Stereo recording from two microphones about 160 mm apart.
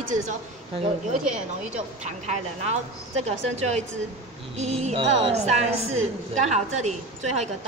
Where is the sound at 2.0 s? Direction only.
45° right (ahead or behind).